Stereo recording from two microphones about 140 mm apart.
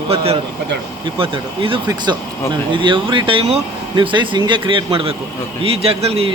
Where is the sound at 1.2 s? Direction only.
40° right (ahead or behind).